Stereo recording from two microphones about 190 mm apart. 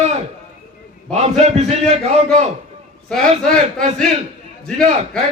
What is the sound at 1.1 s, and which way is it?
A man's voice, 35° right (ahead or behind).